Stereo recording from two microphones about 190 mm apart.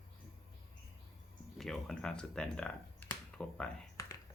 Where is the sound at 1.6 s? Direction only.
Centre (ahead or behind).